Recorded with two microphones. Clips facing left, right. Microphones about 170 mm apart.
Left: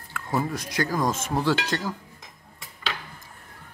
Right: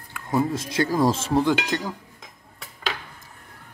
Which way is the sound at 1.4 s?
15° right (ahead or behind).